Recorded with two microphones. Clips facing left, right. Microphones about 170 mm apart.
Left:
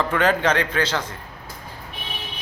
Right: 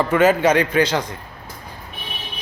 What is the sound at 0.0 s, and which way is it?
Speech, 10° right (ahead or behind).